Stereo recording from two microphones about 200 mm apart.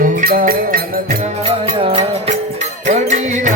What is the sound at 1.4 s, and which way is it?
Music, 30° right (ahead or behind).